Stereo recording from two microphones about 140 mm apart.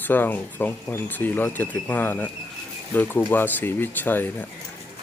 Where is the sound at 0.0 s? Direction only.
15° left (ahead or behind).